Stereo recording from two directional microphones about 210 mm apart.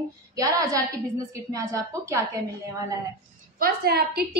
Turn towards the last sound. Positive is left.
turn(degrees=-50)  # may be behind; listen again after turning